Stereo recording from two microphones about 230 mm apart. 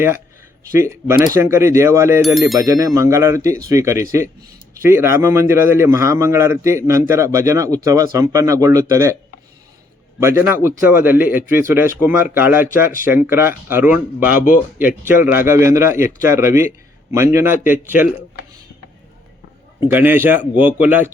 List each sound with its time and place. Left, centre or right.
0.8 s speech: centre
10.2 s speech: centre
14.3 s speech: left
15.3 s speech: centre
19.9 s speech: centre